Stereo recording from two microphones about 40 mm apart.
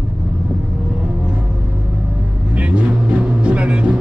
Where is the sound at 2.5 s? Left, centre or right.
Right.